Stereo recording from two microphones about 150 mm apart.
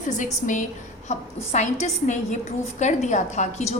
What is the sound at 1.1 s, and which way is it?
A woman's voice, 50° left (ahead or behind).